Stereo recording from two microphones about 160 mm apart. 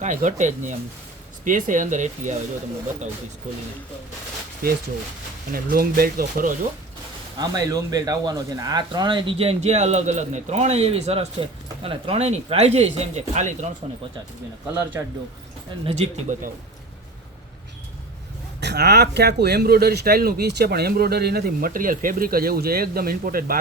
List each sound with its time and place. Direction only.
0.0 s speech: 50° right (ahead or behind)
4.6 s speech: 75° right (ahead or behind)
7.3 s speech: 25° right (ahead or behind); by 13.7 s 45° right (ahead or behind)
15.0 s speech: 15° right (ahead or behind)
15.7 s speech: 30° right (ahead or behind)
16.3 s speech: 50° right (ahead or behind)
18.6 s speech: 90° right; by 23.6 s 65° right (ahead or behind)